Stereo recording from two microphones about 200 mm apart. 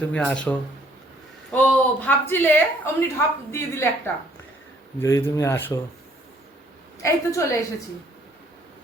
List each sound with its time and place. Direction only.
0.0 s a woman's voice: 5° left (ahead or behind)
7.0 s a woman's voice: 15° left (ahead or behind)